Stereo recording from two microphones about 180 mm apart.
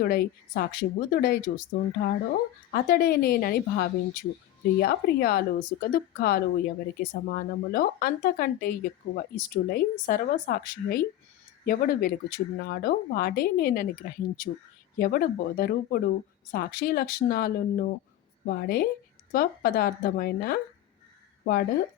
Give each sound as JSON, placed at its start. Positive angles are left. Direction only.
{"t": 0.0, "sound": "speech", "side_deg": 55}